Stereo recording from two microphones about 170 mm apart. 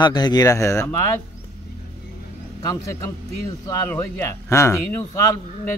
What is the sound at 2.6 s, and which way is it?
A man's voice, 20° left (ahead or behind).